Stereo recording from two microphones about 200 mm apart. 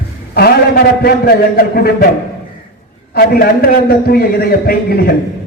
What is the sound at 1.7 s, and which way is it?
Speech, 50° left (ahead or behind).